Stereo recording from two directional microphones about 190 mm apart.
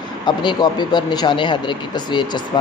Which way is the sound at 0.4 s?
25° left (ahead or behind).